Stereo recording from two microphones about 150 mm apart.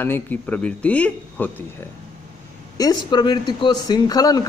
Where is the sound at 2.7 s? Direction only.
25° left (ahead or behind).